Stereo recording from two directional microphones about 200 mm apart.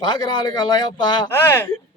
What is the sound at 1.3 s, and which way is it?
Speech, 10° left (ahead or behind).